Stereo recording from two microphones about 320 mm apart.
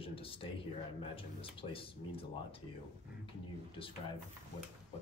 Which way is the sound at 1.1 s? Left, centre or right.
Centre.